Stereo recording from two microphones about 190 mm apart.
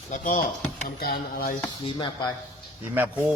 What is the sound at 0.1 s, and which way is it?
Speech, 45° left (ahead or behind).